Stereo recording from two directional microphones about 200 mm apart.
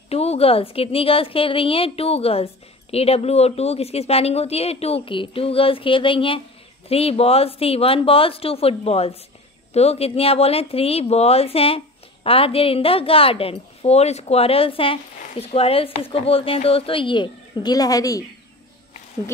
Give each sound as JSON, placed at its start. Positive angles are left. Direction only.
{"t": 0.1, "sound": "a woman's voice", "side_deg": 30}